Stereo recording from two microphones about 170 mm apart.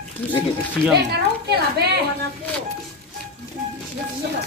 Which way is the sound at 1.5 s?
70° right (ahead or behind).